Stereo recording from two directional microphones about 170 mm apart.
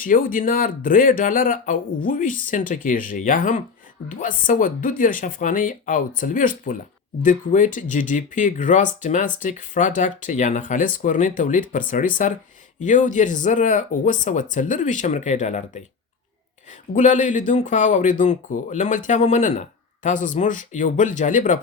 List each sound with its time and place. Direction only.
0.0 s speech: 55° left (ahead or behind)
16.9 s speech: 45° left (ahead or behind)